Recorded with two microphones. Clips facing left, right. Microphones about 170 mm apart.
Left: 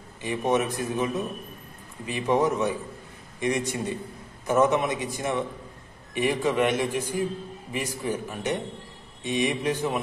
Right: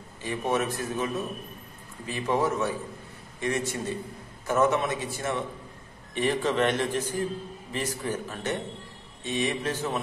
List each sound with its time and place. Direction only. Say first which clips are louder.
0.2 s a man's voice: left 3 dB; 15° left (ahead or behind)